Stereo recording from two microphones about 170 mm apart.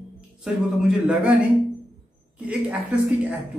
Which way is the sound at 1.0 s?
5° right (ahead or behind).